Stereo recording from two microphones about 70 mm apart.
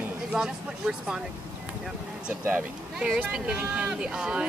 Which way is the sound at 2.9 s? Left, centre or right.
Centre.